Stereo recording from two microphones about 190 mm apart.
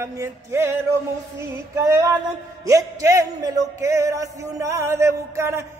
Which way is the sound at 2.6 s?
15° right (ahead or behind).